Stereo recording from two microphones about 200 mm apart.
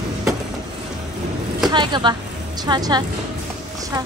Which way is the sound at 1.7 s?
20° right (ahead or behind).